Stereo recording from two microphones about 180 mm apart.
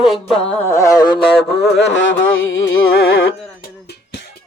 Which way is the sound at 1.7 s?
85° left.